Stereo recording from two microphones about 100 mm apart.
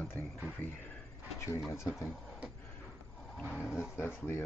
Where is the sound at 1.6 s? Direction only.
30° left (ahead or behind).